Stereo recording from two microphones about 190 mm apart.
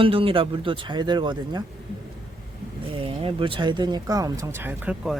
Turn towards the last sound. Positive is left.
turn(degrees=-10)  # may be behind; listen again after turning